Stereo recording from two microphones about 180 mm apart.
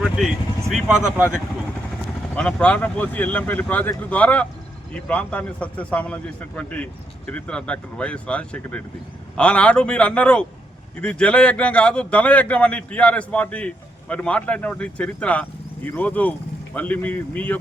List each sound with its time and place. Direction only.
0.0 s speech: centre (ahead or behind)
2.3 s speech: 5° left (ahead or behind)